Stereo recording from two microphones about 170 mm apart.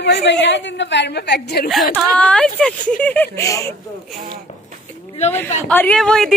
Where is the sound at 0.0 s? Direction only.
90° left.